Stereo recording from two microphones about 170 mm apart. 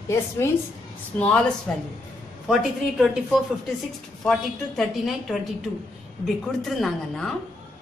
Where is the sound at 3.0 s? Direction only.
5° right (ahead or behind).